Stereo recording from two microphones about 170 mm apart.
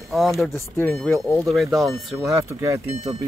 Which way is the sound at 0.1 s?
Centre (ahead or behind).